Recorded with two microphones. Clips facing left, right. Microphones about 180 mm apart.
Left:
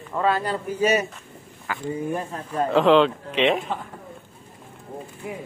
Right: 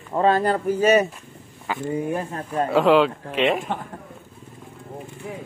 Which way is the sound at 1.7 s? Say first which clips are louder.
Right 4 dB; 20° right (ahead or behind).